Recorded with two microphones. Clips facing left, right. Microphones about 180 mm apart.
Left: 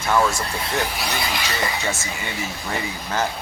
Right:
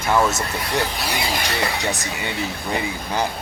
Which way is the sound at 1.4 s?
65° right (ahead or behind).